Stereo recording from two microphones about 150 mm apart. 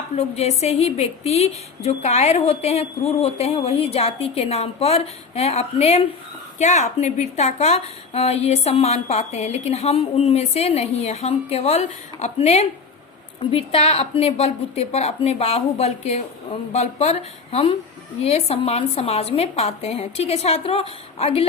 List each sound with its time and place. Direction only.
0.2 s a woman's voice: 45° left (ahead or behind)